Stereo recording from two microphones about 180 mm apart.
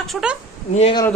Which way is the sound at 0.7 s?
35° left (ahead or behind).